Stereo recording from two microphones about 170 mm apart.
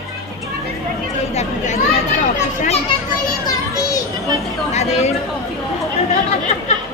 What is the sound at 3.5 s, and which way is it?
Children playing, 20° left (ahead or behind).